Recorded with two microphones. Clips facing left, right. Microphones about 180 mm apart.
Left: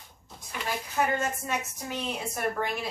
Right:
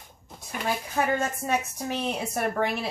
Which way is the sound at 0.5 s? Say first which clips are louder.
Right 4 dB; 45° right (ahead or behind).